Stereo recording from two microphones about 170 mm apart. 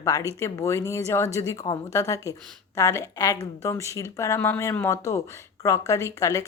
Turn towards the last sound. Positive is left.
turn(degrees=20)  # may be behind; listen again after turning